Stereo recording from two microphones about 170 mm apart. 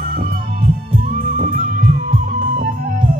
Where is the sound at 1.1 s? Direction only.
60° right (ahead or behind).